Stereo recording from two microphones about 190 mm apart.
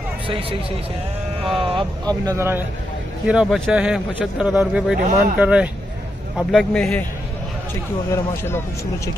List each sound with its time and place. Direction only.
0.3 s speech: 30° right (ahead or behind); by 2.6 s 15° right (ahead or behind)
3.3 s a man's voice: centre (ahead or behind)
8.1 s speech: 15° left (ahead or behind)